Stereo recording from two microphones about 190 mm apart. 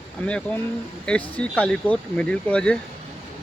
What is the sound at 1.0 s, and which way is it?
Speech, 5° left (ahead or behind).